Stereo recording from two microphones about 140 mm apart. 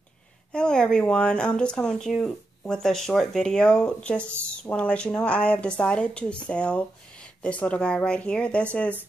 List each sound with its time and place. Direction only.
0.5 s a woman's voice: 5° left (ahead or behind)